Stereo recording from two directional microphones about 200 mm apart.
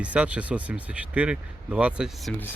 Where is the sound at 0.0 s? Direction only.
5° right (ahead or behind).